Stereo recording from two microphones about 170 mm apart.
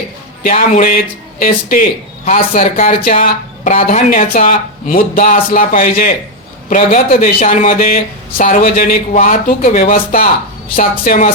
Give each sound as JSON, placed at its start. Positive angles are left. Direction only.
{"t": 0.5, "sound": "speech", "side_deg": 50}